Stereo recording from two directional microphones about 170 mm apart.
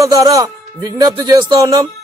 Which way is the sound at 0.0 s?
20° right (ahead or behind).